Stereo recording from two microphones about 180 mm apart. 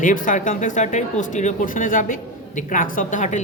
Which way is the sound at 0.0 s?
45° left (ahead or behind).